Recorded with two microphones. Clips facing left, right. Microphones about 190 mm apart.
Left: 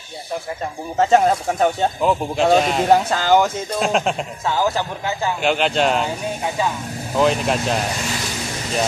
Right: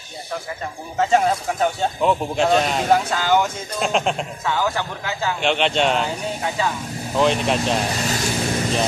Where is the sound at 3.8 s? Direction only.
Centre (ahead or behind).